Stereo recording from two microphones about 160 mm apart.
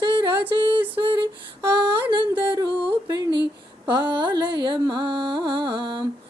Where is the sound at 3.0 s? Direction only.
25° right (ahead or behind).